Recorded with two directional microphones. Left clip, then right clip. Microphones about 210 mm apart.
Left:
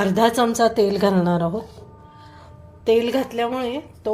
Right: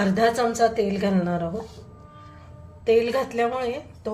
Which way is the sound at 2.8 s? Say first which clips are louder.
Left 2 dB; 30° left (ahead or behind).